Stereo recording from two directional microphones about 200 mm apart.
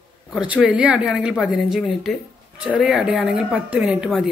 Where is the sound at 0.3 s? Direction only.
5° right (ahead or behind).